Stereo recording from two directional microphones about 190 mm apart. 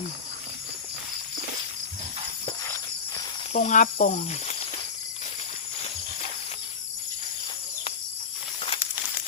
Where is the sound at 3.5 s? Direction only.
40° left (ahead or behind).